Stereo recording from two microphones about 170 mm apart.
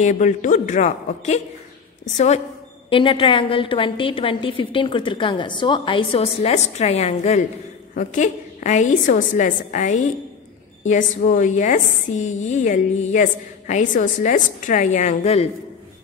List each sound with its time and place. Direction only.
0.0 s a woman's voice: 45° left (ahead or behind)
2.9 s a woman's voice: 30° left (ahead or behind)